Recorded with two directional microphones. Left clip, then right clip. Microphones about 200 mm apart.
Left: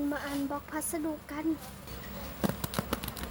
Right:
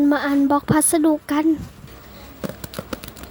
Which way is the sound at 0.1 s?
40° right (ahead or behind).